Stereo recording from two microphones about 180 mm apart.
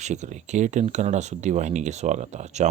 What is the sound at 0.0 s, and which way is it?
Speech, 40° right (ahead or behind).